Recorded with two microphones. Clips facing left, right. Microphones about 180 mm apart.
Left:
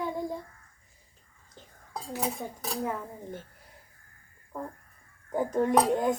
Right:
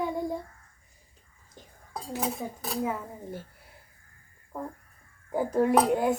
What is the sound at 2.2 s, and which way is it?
Speech, centre (ahead or behind).